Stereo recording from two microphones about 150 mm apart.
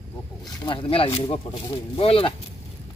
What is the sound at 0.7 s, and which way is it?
Speech, 35° left (ahead or behind).